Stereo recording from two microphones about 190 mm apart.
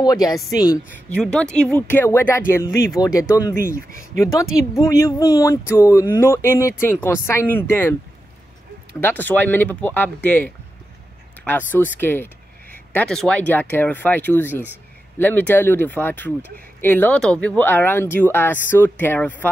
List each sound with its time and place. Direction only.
0.0 s a woman's voice: 20° left (ahead or behind)
1.1 s speech: 5° left (ahead or behind)
9.0 s speech: 10° left (ahead or behind)